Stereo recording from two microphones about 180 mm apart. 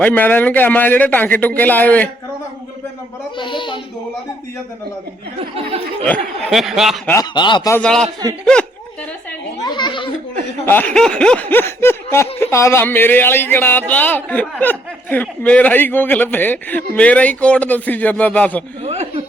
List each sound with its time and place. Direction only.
0.0 s a man's voice: 10° left (ahead or behind)
3.3 s speech: 25° left (ahead or behind)
5.4 s a sound: 35° right (ahead or behind)
6.4 s speech: centre (ahead or behind)
7.1 s speech: 20° left (ahead or behind)
7.7 s speech: 5° left (ahead or behind)
9.6 s speech: 25° left (ahead or behind)
10.7 s a man's voice: 10° left (ahead or behind)
18.8 s chuckle: 35° right (ahead or behind)